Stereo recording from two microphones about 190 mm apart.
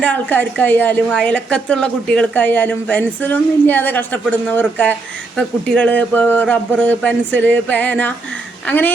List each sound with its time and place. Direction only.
0.0 s a woman's voice: 10° left (ahead or behind)